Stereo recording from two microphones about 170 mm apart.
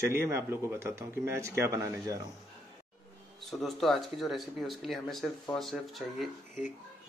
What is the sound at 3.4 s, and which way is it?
Speech, centre (ahead or behind).